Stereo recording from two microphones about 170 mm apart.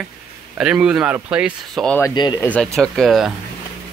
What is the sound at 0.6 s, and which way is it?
Speech, 5° right (ahead or behind).